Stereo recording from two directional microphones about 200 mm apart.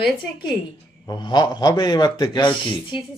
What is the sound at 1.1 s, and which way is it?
A man's voice, 20° left (ahead or behind).